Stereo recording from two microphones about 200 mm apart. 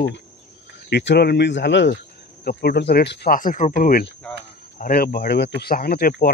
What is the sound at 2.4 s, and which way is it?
Speech, 50° left (ahead or behind).